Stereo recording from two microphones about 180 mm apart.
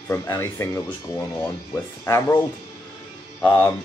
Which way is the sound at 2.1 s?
15° left (ahead or behind).